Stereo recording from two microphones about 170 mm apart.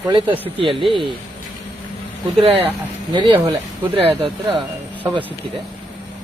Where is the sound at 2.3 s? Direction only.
35° right (ahead or behind).